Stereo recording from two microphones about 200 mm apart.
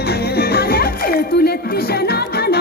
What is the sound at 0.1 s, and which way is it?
Music, 50° left (ahead or behind).